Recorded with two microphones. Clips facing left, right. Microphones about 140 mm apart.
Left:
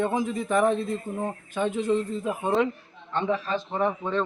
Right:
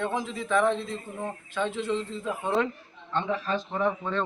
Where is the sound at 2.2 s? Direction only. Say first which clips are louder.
Left 3 dB; 15° left (ahead or behind).